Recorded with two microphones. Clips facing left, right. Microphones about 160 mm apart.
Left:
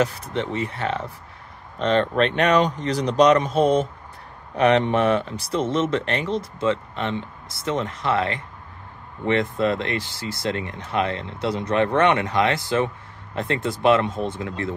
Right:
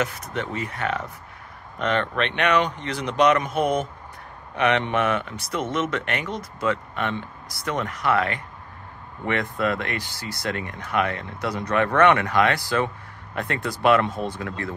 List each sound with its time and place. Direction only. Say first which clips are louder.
0.0 s speech: left 4 dB; 30° left (ahead or behind)